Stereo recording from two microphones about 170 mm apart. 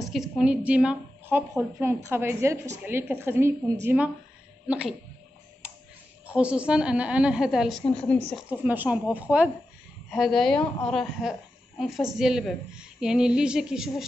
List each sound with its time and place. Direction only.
0.1 s a woman's voice: 5° right (ahead or behind)
6.2 s a woman's voice: 5° right (ahead or behind)